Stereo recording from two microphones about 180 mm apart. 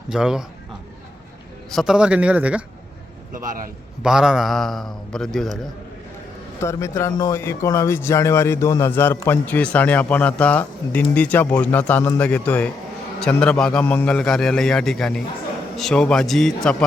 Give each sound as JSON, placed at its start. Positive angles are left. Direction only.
{"t": 0.1, "sound": "a man's voice", "side_deg": -5}
{"t": 1.7, "sound": "a man's voice", "side_deg": 0}
{"t": 3.3, "sound": "a man's voice", "side_deg": -45}
{"t": 4.0, "sound": "a man's voice", "side_deg": -5}
{"t": 6.6, "sound": "a man's voice", "side_deg": 15}